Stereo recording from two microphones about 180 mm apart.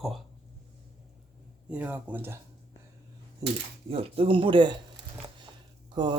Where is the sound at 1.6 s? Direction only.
10° right (ahead or behind).